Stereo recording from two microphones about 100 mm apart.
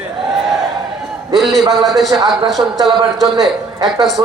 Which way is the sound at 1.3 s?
Centre (ahead or behind).